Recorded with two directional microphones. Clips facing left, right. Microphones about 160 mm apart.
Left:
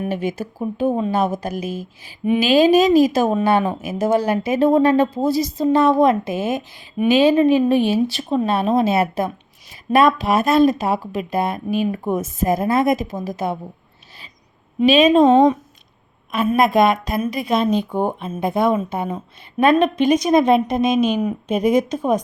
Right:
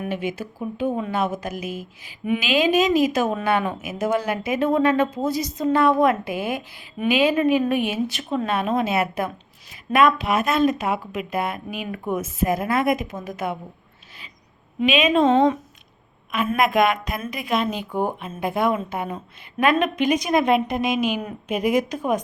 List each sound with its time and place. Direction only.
0.0 s a woman's voice: 40° left (ahead or behind)
14.8 s speech: 35° left (ahead or behind)
15.2 s speech: 15° left (ahead or behind)
16.6 s a woman's voice: 30° left (ahead or behind)